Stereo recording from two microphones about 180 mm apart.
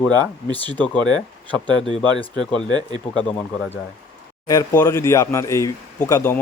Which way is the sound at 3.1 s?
5° left (ahead or behind).